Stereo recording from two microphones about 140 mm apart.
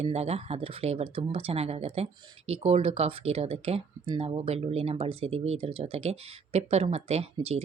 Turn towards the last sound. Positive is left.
turn(degrees=-50)  # may be behind; listen again after turning